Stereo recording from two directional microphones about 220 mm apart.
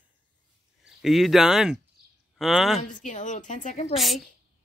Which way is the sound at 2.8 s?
35° left (ahead or behind).